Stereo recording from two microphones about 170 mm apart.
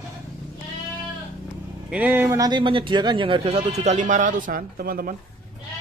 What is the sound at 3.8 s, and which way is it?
Speech, 45° right (ahead or behind).